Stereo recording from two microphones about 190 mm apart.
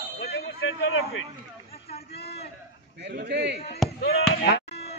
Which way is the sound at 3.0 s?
65° right (ahead or behind).